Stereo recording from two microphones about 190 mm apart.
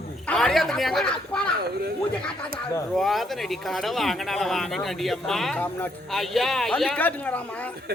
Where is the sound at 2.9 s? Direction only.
Centre (ahead or behind).